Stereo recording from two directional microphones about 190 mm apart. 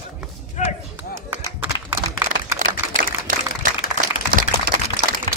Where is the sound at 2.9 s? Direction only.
45° right (ahead or behind).